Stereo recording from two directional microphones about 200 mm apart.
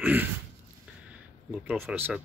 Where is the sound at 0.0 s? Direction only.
10° right (ahead or behind).